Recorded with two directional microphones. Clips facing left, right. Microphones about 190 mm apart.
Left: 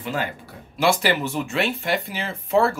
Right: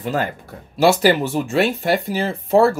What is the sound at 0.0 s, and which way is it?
Speech, 40° right (ahead or behind).